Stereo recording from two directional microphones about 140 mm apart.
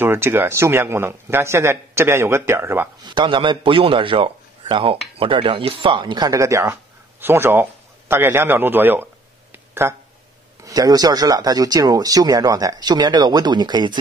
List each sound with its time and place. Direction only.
0.0 s speech: 15° right (ahead or behind)
3.0 s a man's voice: 35° right (ahead or behind); by 9.9 s 15° right (ahead or behind)
10.6 s speech: 25° right (ahead or behind)